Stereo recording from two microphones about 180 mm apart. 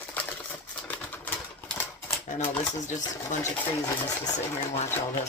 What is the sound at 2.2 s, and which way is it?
Typewriter, 45° left (ahead or behind).